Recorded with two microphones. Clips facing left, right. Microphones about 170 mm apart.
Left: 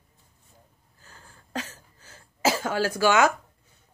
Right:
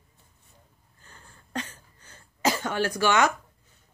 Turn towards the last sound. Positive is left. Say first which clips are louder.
# left 2 dB
turn(degrees=10)  # may be behind; listen again after turning